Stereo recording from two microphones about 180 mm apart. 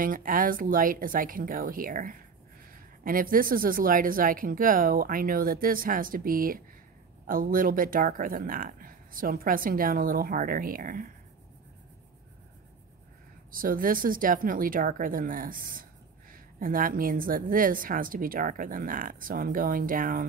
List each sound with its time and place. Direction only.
0.0 s a woman's voice: 50° right (ahead or behind)
13.5 s a woman's voice: 50° right (ahead or behind)